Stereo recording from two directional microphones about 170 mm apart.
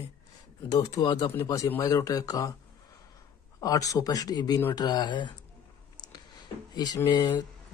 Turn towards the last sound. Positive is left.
turn(degrees=20)  # may be behind; listen again after turning